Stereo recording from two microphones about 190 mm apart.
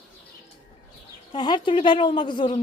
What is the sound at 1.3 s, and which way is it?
A woman's voice, 25° left (ahead or behind).